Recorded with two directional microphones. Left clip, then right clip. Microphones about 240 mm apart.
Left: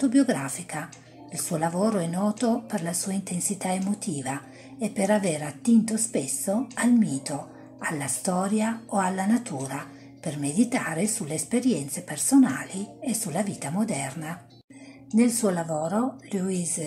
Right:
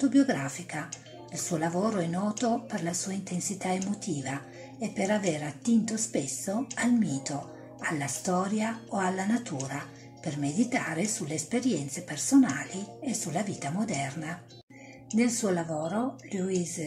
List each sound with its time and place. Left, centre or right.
0.0 s speech: centre